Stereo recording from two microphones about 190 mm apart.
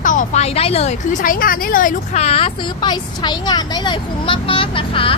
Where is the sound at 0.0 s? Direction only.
45° left (ahead or behind).